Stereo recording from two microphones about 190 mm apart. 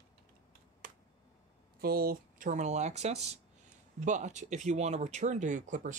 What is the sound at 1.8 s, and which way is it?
Speech, 55° right (ahead or behind).